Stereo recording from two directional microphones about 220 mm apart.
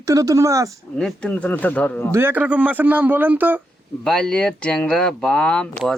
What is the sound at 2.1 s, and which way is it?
A man's voice, 10° right (ahead or behind).